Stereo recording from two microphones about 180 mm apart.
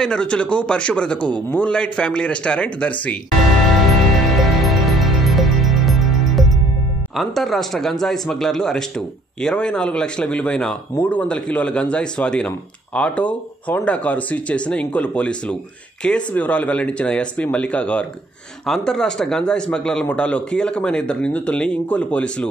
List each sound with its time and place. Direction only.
0.0 s a man's voice: 5° left (ahead or behind)
4.3 s music: centre (ahead or behind)
7.2 s a man's voice: centre (ahead or behind)